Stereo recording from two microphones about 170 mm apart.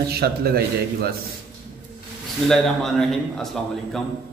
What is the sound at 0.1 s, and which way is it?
A man's voice, 65° right (ahead or behind).